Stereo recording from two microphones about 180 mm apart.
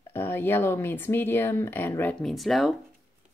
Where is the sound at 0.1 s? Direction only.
10° left (ahead or behind).